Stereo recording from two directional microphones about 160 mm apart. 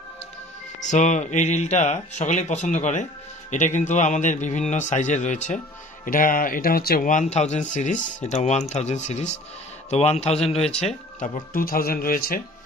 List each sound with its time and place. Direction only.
0.7 s speech: 50° left (ahead or behind)
6.0 s speech: 60° left (ahead or behind); by 10.9 s 40° left (ahead or behind)
11.5 s speech: 65° left (ahead or behind)